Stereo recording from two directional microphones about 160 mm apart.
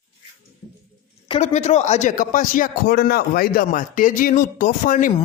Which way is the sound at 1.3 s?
45° left (ahead or behind).